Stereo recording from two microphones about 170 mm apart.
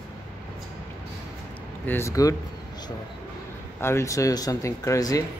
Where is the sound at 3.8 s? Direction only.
15° left (ahead or behind).